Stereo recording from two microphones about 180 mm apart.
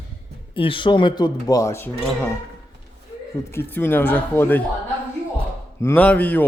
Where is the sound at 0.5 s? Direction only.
30° left (ahead or behind); by 2.3 s 10° left (ahead or behind).